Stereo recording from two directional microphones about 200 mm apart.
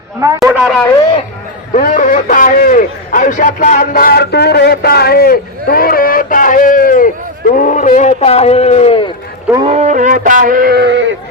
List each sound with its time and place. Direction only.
0.2 s a man's voice: 15° right (ahead or behind)
0.6 s a man's voice: 5° left (ahead or behind)
1.7 s a man's voice: 40° left (ahead or behind)
9.6 s sheep: 35° right (ahead or behind); by 11.1 s 60° right (ahead or behind)